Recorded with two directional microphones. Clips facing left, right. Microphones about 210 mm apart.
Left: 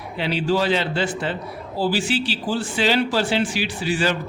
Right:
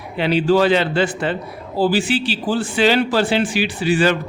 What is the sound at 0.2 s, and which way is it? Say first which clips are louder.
Speech: right 6 dB; 55° right (ahead or behind).